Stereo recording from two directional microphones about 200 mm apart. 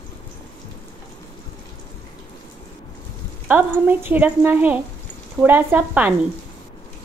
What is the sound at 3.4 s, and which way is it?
A woman's voice, 10° right (ahead or behind).